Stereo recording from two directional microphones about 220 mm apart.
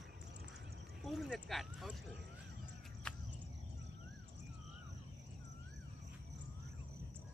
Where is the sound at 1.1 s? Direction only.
Centre (ahead or behind).